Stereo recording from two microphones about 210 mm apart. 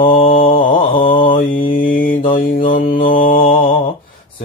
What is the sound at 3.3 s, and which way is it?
Mantra, 25° left (ahead or behind).